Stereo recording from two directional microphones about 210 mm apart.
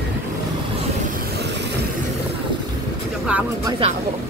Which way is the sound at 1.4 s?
55° right (ahead or behind).